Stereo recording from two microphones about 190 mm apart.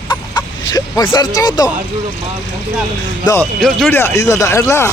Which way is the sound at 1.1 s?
20° left (ahead or behind).